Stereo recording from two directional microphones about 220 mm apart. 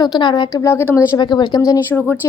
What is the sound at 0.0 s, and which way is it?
A woman's voice, 20° left (ahead or behind).